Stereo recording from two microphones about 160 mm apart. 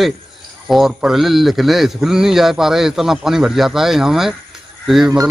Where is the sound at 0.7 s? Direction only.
Centre (ahead or behind).